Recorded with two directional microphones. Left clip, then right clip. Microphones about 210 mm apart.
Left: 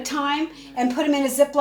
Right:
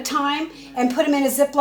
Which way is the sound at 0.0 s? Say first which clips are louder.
Right 2 dB; 25° right (ahead or behind).